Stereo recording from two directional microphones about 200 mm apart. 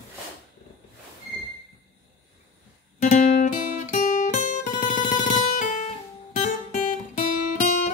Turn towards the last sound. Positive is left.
turn(degrees=40)  # may be behind; listen again after turning